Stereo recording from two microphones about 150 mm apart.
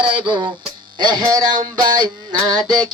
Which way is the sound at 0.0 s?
35° right (ahead or behind).